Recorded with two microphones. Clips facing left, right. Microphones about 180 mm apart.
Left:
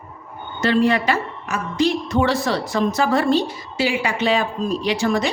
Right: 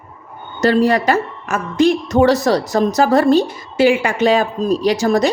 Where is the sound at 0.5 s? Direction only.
40° right (ahead or behind).